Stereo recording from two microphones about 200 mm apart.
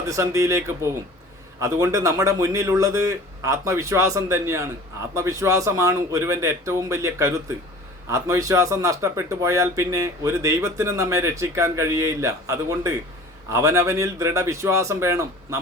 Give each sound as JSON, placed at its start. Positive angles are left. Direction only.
{"t": 0.1, "sound": "speech", "side_deg": -15}
{"t": 1.6, "sound": "speech", "side_deg": -15}